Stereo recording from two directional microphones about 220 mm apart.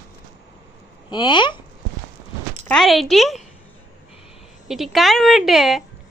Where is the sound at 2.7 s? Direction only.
Centre (ahead or behind).